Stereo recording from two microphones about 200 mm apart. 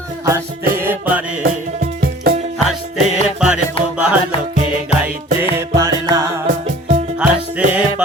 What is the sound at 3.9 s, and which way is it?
Music, 5° right (ahead or behind).